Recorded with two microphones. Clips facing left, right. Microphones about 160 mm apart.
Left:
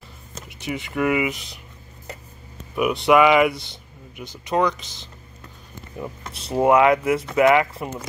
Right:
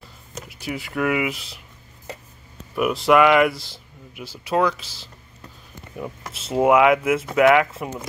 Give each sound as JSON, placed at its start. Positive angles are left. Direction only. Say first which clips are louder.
{"t": 0.4, "sound": "speech", "louder": "even", "side_deg": 0}
{"t": 2.7, "sound": "speech", "louder": "even", "side_deg": 0}